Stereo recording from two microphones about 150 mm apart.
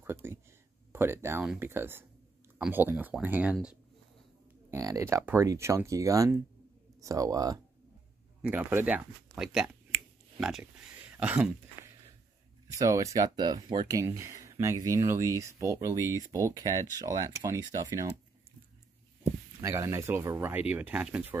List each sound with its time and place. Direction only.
0.0 s a sound: 15° right (ahead or behind)
0.9 s speech: 15° right (ahead or behind)
4.6 s speech: 20° right (ahead or behind)
8.4 s speech: 10° right (ahead or behind)
12.7 s speech: 20° right (ahead or behind)
19.6 s speech: 20° right (ahead or behind)